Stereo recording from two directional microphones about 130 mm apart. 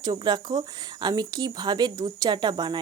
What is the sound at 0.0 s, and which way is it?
Speech, 35° right (ahead or behind).